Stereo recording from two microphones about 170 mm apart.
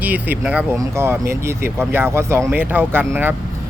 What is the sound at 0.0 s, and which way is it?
Speech, 10° right (ahead or behind).